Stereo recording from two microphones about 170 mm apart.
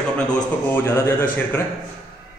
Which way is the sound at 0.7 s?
15° left (ahead or behind).